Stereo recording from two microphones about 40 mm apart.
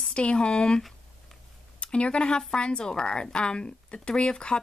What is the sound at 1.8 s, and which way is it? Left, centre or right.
Speech, left.